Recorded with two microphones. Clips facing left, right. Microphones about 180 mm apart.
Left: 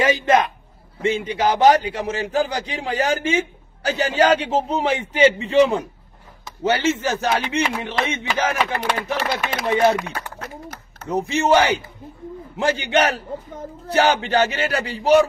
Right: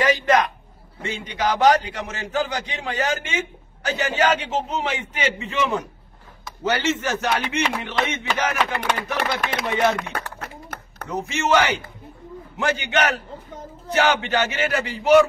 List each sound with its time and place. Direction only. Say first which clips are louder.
0.0 s a man's voice: left 2 dB; 25° left (ahead or behind)
10.1 s a sound: even; 60° right (ahead or behind)
11.1 s a man's voice: left 4 dB; 30° left (ahead or behind)